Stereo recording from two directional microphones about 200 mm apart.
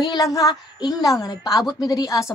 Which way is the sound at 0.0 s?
20° left (ahead or behind).